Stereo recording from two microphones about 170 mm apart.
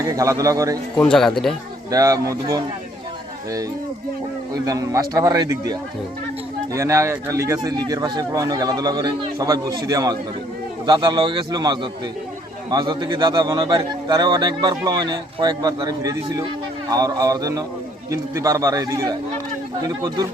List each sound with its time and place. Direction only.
0.0 s speech: 20° right (ahead or behind)
0.9 s speech: 5° left (ahead or behind)
1.9 s speech: 20° right (ahead or behind)
4.5 s speech: 20° right (ahead or behind)
6.7 s speech: 15° right (ahead or behind)